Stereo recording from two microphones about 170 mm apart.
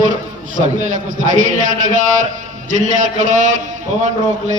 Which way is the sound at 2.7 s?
45° right (ahead or behind).